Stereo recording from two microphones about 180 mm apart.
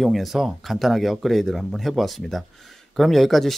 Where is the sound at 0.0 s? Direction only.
Centre (ahead or behind).